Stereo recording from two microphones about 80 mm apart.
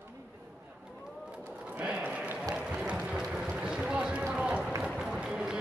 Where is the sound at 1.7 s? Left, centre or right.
Centre.